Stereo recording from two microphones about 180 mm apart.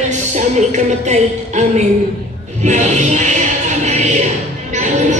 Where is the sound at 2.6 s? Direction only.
40° right (ahead or behind).